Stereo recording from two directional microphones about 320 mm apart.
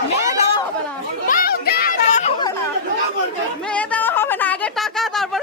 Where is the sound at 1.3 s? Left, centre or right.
Left.